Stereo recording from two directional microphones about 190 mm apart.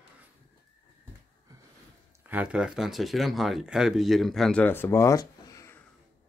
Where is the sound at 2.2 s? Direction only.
10° right (ahead or behind); by 5.8 s 15° left (ahead or behind).